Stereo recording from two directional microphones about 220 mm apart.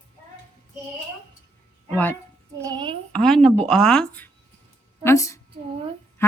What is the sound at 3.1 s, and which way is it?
Speech, centre (ahead or behind).